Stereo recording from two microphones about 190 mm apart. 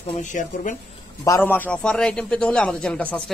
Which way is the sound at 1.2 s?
15° left (ahead or behind).